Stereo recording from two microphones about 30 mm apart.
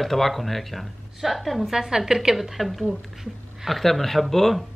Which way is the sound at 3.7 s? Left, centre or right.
Centre.